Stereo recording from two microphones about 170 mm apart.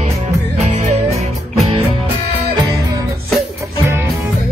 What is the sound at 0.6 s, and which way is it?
Music, 45° right (ahead or behind).